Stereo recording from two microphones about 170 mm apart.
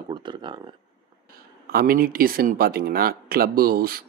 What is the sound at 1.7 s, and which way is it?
Speech, 60° right (ahead or behind).